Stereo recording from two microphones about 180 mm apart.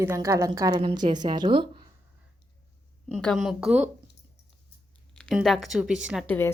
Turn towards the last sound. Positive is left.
turn(degrees=15)  # may be behind; listen again after turning